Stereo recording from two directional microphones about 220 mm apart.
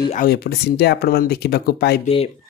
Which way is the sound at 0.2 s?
45° left (ahead or behind).